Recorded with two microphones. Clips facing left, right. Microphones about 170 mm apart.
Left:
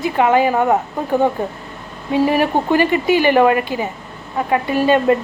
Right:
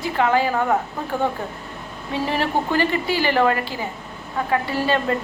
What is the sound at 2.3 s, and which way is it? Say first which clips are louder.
A woman's voice: left 6 dB; 15° left (ahead or behind).